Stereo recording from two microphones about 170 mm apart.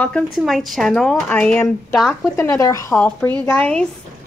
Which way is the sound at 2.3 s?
15° left (ahead or behind).